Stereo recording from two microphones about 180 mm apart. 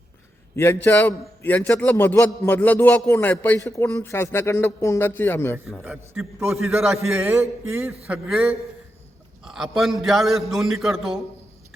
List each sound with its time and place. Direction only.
0.5 s a man's voice: 15° left (ahead or behind)
5.8 s a man's voice: 5° right (ahead or behind)